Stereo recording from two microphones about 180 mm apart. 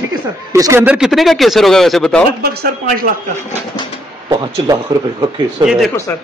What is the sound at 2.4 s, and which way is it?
Speech, 60° right (ahead or behind).